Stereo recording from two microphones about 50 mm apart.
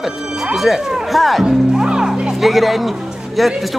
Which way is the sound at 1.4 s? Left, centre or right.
Centre.